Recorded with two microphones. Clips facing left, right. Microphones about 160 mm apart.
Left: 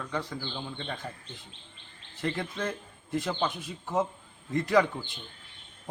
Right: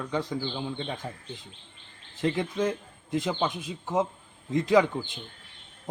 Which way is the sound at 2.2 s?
15° right (ahead or behind).